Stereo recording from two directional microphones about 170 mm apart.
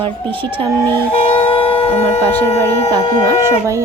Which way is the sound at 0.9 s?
10° left (ahead or behind).